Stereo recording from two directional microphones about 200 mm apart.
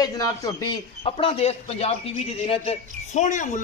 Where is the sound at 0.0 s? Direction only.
20° left (ahead or behind).